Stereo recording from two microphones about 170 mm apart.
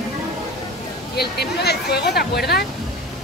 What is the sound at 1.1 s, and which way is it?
Speech, 70° left (ahead or behind).